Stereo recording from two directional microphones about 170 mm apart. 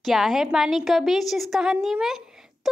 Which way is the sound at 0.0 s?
Centre (ahead or behind).